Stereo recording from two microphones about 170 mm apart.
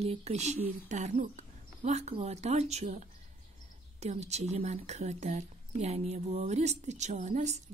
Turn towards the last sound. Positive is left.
turn(degrees=-45)  # may be behind; listen again after turning